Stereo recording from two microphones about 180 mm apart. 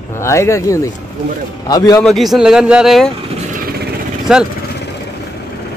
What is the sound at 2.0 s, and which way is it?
Speech, centre (ahead or behind).